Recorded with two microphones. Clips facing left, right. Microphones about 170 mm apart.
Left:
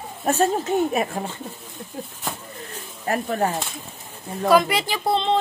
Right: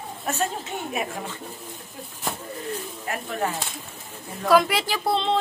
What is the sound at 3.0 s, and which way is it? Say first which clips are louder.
Speech: left 6 dB; 40° left (ahead or behind).